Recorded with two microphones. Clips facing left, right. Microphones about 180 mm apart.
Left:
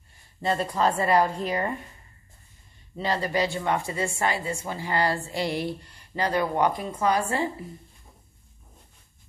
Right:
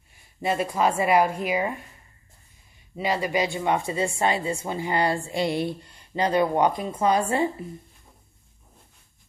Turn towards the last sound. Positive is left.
turn(degrees=-20)  # may be behind; listen again after turning